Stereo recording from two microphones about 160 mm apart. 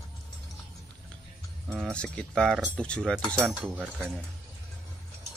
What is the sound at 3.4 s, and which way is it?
Speech, 10° right (ahead or behind).